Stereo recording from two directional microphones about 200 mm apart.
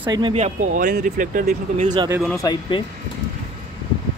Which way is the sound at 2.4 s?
20° left (ahead or behind).